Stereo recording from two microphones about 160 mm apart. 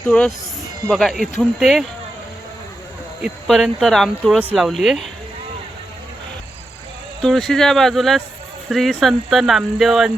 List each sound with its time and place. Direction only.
0.1 s speech: 5° left (ahead or behind)
3.2 s speech: 5° right (ahead or behind)
7.2 s speech: centre (ahead or behind)